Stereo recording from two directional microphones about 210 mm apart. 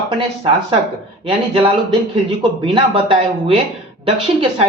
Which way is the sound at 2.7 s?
25° right (ahead or behind).